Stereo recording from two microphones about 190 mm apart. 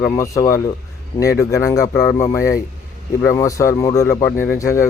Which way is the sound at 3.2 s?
15° left (ahead or behind).